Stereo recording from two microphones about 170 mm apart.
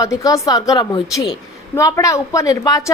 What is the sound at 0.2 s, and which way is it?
A woman's voice, 20° left (ahead or behind).